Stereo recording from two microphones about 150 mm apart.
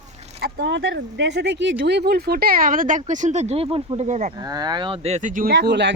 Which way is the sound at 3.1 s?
55° right (ahead or behind).